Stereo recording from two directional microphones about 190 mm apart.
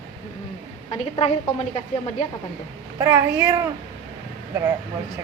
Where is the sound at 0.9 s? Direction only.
25° left (ahead or behind).